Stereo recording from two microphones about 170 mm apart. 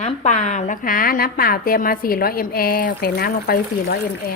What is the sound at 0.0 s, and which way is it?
A woman's voice, 45° left (ahead or behind).